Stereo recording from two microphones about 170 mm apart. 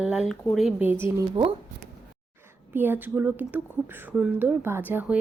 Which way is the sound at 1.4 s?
30° right (ahead or behind).